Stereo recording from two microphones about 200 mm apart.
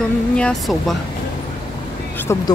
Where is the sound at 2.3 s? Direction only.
15° left (ahead or behind).